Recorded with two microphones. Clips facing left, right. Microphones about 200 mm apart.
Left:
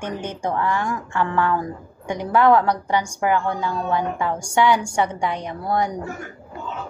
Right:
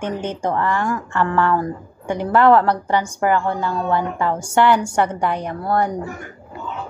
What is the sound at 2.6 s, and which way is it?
A woman's voice, 10° left (ahead or behind).